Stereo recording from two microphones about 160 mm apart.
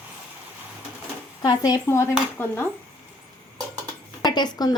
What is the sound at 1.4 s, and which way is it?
Speech, 25° left (ahead or behind).